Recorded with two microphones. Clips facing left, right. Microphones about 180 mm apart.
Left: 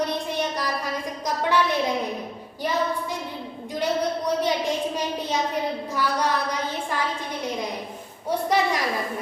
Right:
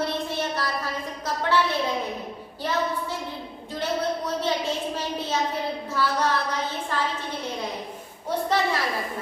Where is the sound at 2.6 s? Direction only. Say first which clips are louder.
Left 1 dB; 10° left (ahead or behind).